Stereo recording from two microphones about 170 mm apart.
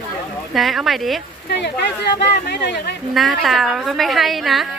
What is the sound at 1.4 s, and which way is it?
Speech, 80° left.